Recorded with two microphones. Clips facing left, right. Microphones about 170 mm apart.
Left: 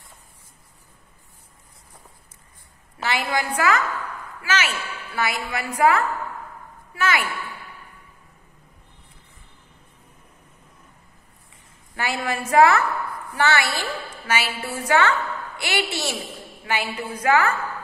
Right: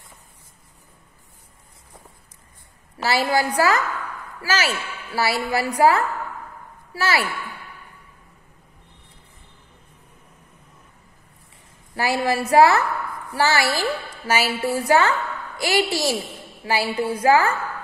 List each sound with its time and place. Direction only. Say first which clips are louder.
3.0 s a woman's voice: right 4 dB; 35° right (ahead or behind)
11.9 s a woman's voice: right 5 dB; 35° right (ahead or behind)